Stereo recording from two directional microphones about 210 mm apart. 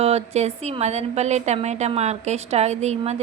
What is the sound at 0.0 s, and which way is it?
A woman's voice, 30° right (ahead or behind).